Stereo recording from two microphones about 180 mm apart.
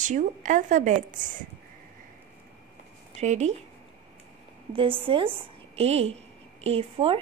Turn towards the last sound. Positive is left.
turn(degrees=-30)  # may be behind; listen again after turning